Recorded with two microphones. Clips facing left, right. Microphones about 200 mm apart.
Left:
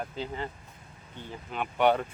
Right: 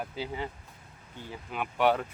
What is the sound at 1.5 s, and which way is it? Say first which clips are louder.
Speech: left 1 dB; 5° right (ahead or behind).